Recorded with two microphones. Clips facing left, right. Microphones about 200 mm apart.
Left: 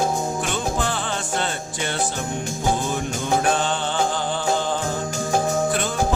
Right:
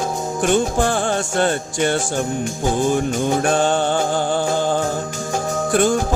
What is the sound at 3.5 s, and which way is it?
Music, 45° right (ahead or behind).